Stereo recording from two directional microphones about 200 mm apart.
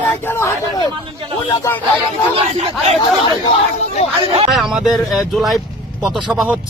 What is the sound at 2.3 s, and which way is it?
Speech, 30° right (ahead or behind).